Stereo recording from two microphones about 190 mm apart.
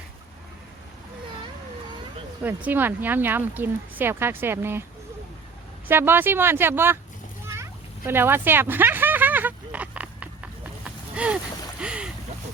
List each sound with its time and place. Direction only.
2.4 s speech: 10° right (ahead or behind)
5.9 s speech: 10° right (ahead or behind)
7.4 s a sound: 15° right (ahead or behind)
11.8 s boat: 5° right (ahead or behind)